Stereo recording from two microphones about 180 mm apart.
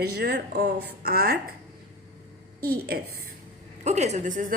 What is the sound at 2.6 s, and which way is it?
Speech, 60° right (ahead or behind).